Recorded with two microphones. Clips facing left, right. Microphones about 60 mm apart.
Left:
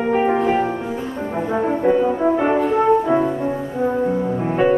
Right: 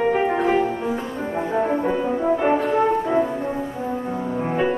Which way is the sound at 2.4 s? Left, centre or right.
Centre.